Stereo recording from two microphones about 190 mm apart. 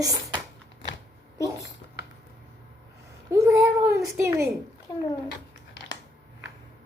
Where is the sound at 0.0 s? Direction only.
20° right (ahead or behind).